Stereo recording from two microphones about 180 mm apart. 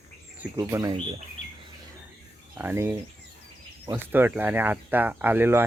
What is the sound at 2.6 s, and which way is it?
Speech, 10° right (ahead or behind).